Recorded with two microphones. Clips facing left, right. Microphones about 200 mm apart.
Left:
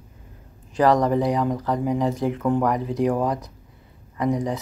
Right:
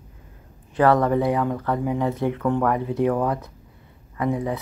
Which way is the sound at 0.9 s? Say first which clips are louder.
Even; 20° left (ahead or behind).